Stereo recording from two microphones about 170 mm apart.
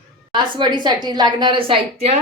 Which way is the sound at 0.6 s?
25° right (ahead or behind).